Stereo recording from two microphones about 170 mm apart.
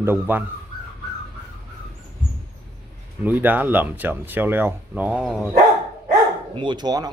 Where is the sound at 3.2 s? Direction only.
10° right (ahead or behind).